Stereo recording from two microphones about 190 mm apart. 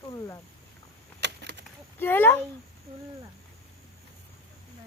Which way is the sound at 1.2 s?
65° right (ahead or behind).